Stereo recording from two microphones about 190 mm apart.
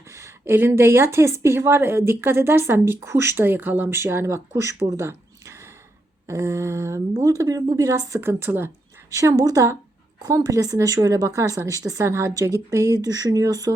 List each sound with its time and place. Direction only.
0.1 s a woman's voice: 15° right (ahead or behind)